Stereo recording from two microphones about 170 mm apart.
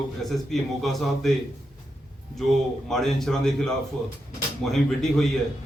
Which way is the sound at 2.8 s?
Centre (ahead or behind).